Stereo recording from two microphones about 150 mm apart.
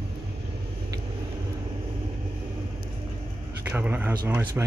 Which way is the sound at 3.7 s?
15° right (ahead or behind).